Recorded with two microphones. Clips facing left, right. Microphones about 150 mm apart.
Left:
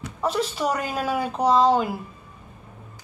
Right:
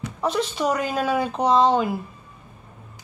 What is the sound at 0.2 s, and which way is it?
Speech, 5° left (ahead or behind).